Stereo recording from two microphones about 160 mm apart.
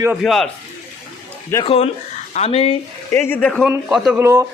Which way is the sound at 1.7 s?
40° left (ahead or behind).